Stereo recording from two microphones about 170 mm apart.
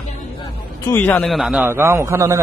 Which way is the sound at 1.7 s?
15° right (ahead or behind).